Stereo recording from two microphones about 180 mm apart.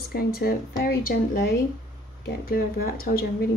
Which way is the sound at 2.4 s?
55° left (ahead or behind).